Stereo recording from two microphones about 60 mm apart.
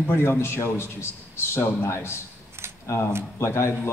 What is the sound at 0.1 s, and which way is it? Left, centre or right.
Speech, left.